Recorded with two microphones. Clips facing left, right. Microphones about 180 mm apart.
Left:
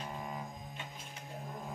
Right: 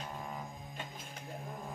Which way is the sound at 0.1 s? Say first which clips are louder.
Left 1 dB; 5° left (ahead or behind).